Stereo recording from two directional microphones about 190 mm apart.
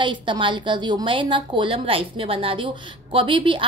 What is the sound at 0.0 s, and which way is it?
A woman's voice, 25° right (ahead or behind).